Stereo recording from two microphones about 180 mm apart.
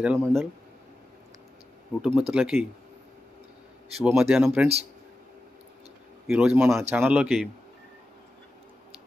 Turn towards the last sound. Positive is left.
turn(degrees=-5)  # may be behind; listen again after turning